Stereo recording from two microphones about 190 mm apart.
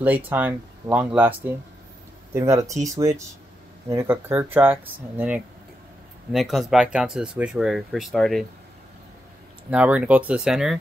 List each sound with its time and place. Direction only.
0.0 s speech: 10° right (ahead or behind)
9.7 s speech: 5° right (ahead or behind)